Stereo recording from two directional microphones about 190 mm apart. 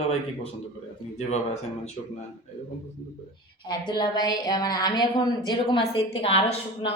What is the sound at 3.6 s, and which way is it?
A woman's voice, 20° left (ahead or behind).